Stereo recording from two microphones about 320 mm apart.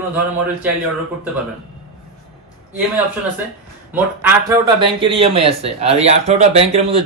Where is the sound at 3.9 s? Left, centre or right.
Centre.